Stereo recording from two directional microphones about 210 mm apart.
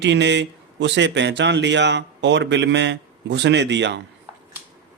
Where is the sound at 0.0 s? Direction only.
55° right (ahead or behind).